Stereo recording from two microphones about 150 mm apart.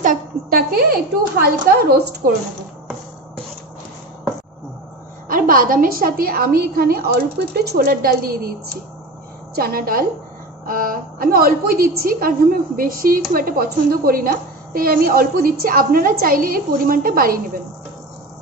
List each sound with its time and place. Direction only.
0.0 s a sound: 65° right (ahead or behind)
1.7 s a woman's voice: 85° right
5.3 s a woman's voice: 70° right (ahead or behind); by 8.5 s 85° right
9.6 s a woman's voice: 75° right (ahead or behind)